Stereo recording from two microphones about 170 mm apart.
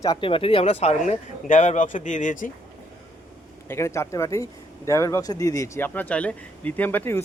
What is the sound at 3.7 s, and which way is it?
Speech, 15° left (ahead or behind).